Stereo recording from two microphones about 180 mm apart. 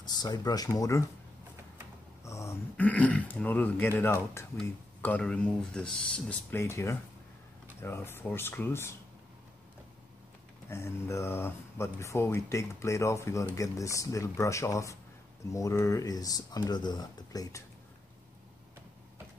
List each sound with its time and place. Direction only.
0.0 s speech: 20° left (ahead or behind)
2.2 s speech: 15° left (ahead or behind)
10.7 s speech: 15° left (ahead or behind)